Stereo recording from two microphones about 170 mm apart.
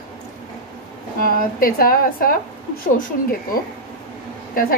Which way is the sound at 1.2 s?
55° left (ahead or behind).